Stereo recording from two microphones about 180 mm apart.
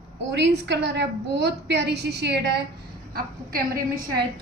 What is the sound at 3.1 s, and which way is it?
A woman's voice, 55° right (ahead or behind).